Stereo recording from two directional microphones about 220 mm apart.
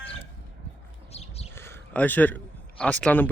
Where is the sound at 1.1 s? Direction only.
30° left (ahead or behind).